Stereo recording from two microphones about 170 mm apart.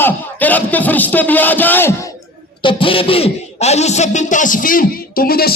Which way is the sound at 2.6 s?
30° left (ahead or behind).